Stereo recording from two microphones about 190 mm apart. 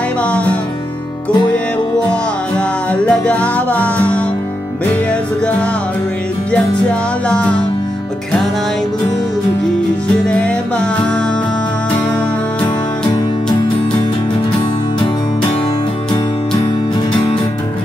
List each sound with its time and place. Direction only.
0.2 s music: 5° left (ahead or behind)
2.5 s music: 5° left (ahead or behind)
6.5 s music: 5° left (ahead or behind)
10.2 s music: 5° left (ahead or behind)